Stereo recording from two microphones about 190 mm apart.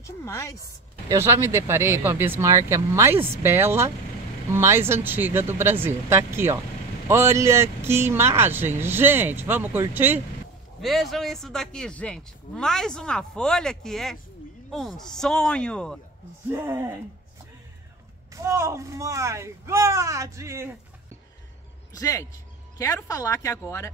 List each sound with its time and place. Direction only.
0.0 s speech: 15° left (ahead or behind)
1.0 s speech: 15° right (ahead or behind)
10.8 s speech: centre (ahead or behind)
16.4 s speech: 15° right (ahead or behind)
18.3 s speech: 15° right (ahead or behind)
21.9 s speech: 15° left (ahead or behind)